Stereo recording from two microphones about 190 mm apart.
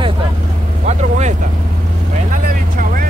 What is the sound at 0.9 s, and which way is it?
Speech, 40° right (ahead or behind).